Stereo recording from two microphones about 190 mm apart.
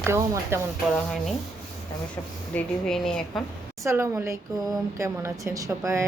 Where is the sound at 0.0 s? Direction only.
15° right (ahead or behind).